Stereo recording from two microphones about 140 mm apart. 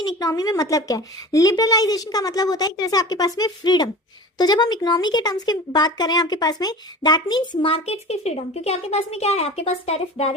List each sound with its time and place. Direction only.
0.0 s a woman's voice: 25° left (ahead or behind); by 10.3 s 45° left (ahead or behind)